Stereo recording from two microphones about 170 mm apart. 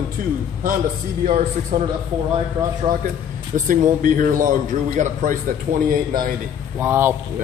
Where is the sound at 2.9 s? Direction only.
25° right (ahead or behind).